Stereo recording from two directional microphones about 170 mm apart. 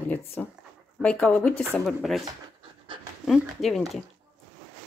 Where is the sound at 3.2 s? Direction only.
Centre (ahead or behind).